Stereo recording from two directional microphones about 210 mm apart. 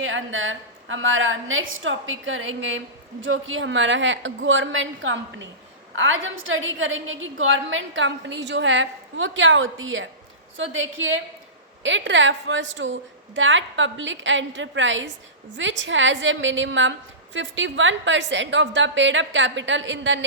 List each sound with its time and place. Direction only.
0.0 s a woman's voice: 65° right (ahead or behind)